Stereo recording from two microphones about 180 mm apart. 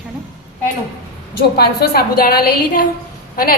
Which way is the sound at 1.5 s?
60° left (ahead or behind).